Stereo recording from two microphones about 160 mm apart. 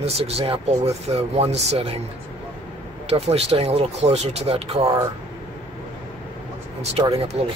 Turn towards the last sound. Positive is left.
turn(degrees=-40)  # may be behind; listen again after turning